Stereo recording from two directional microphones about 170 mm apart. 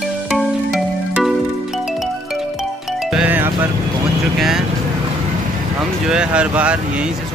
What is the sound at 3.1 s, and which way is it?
Music, 5° right (ahead or behind).